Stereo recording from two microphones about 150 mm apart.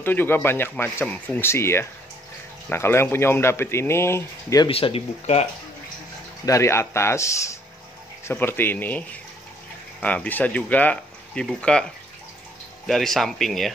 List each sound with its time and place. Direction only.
0.0 s speech: 15° left (ahead or behind)
4.6 s speech: 40° left (ahead or behind)
6.4 s a man's voice: 20° left (ahead or behind); by 13.7 s centre (ahead or behind)